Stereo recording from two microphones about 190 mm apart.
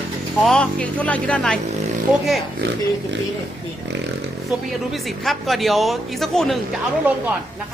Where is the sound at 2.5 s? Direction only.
60° right (ahead or behind).